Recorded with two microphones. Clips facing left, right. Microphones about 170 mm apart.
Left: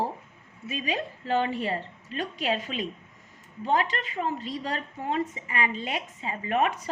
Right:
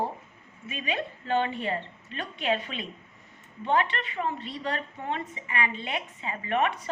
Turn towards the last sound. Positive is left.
turn(degrees=40)  # may be behind; listen again after turning